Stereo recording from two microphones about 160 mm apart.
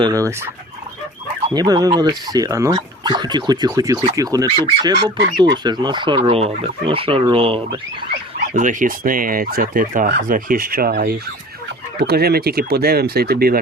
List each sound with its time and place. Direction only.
0.0 s speech: 20° right (ahead or behind)
8.5 s speech: 55° right (ahead or behind); by 13.6 s 75° right (ahead or behind)